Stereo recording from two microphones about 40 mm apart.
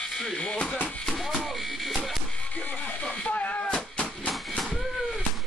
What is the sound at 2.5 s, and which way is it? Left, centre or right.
Music, left.